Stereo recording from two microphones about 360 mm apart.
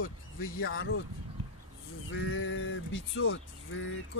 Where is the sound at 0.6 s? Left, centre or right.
Left.